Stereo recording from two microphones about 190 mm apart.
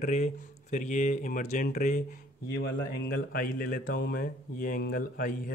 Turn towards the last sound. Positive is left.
turn(degrees=55)  # may be behind; listen again after turning